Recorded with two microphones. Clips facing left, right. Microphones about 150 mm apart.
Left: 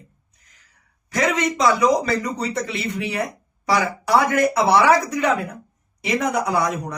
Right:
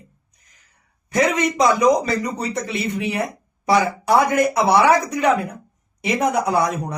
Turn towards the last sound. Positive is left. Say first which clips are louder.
# right 2 dB
turn(degrees=-20)  # may be behind; listen again after turning